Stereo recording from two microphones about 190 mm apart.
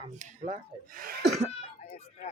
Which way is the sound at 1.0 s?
50° right (ahead or behind).